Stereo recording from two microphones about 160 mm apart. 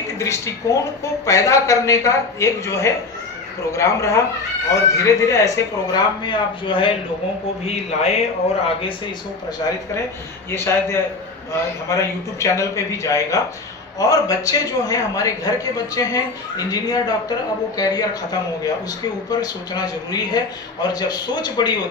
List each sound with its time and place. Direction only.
0.2 s a man's voice: 20° left (ahead or behind)
7.6 s speech: 45° left (ahead or behind)
10.5 s a man's voice: 15° left (ahead or behind)